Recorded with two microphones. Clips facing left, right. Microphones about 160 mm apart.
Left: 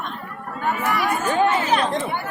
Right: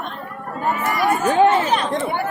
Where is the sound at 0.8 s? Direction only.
40° right (ahead or behind).